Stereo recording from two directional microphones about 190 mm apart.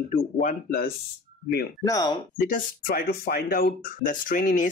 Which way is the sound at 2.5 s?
50° left (ahead or behind).